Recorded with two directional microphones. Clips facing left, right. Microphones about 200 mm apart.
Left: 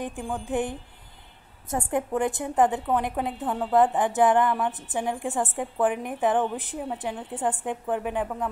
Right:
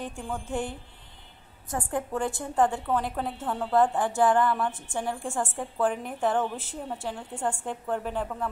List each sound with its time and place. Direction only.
0.0 s a woman's voice: 15° left (ahead or behind)